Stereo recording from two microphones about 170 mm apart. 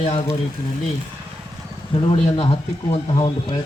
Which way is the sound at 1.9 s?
30° left (ahead or behind).